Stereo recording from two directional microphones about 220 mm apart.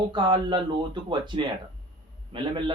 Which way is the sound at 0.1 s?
20° right (ahead or behind).